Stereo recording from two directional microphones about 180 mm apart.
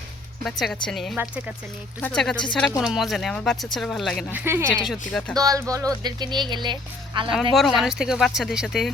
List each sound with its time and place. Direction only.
0.4 s speech: centre (ahead or behind)
4.3 s speech: 10° right (ahead or behind)
7.5 s speech: centre (ahead or behind)